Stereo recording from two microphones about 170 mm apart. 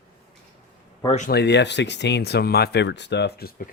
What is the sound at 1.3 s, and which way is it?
Speech, 75° left (ahead or behind).